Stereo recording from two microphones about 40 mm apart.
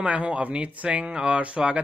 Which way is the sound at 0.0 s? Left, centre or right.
Right.